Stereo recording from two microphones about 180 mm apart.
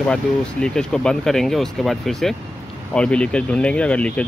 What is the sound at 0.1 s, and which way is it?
Speech, 5° left (ahead or behind).